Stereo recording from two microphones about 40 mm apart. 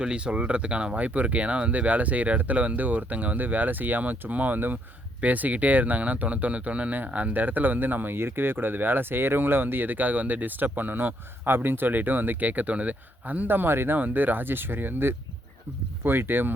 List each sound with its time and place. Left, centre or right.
0.0 s speech: right
0.9 s speech: right
6.9 s speech: right
11.4 s speech: right
14.0 s speech: right